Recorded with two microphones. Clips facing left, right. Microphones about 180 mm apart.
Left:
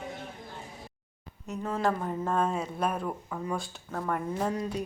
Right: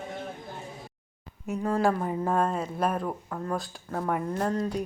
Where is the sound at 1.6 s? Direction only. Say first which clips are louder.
Right 4 dB; 10° right (ahead or behind).